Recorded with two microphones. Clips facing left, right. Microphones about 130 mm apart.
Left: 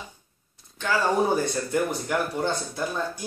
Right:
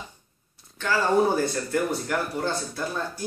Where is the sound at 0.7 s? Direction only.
15° left (ahead or behind).